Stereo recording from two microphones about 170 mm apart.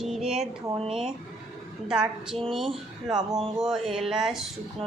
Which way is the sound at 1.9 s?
5° right (ahead or behind).